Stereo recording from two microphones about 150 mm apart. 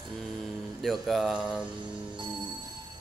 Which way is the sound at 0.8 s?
Centre (ahead or behind).